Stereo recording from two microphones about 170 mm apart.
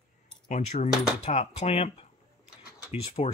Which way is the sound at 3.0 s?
35° left (ahead or behind).